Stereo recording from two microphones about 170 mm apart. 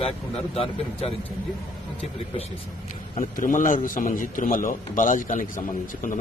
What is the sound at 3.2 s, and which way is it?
A man's voice, 50° left (ahead or behind).